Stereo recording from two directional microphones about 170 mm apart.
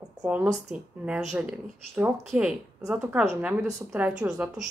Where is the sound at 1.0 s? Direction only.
5° right (ahead or behind).